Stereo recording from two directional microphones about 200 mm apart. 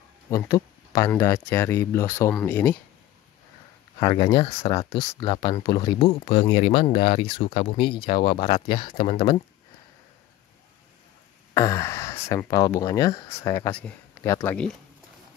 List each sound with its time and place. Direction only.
0.3 s speech: 15° left (ahead or behind)
4.0 s speech: 25° left (ahead or behind)
11.5 s speech: 15° left (ahead or behind)